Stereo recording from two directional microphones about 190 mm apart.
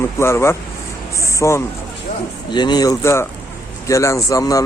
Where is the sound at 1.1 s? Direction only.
15° left (ahead or behind).